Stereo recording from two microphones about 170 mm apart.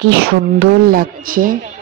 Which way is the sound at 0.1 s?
65° right (ahead or behind).